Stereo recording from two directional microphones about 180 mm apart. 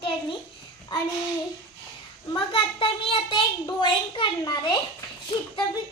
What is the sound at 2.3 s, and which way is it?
A child's voice, 30° left (ahead or behind).